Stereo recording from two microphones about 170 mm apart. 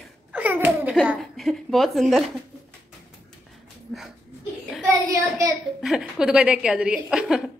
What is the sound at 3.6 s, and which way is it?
Dog, centre (ahead or behind).